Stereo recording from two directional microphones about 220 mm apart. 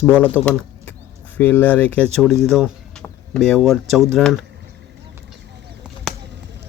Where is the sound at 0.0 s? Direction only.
5° left (ahead or behind).